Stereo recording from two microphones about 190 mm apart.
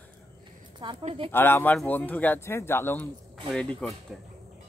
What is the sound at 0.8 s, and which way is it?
Speech, 30° right (ahead or behind).